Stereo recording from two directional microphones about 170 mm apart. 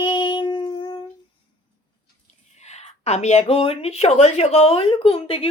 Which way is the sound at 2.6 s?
40° left (ahead or behind).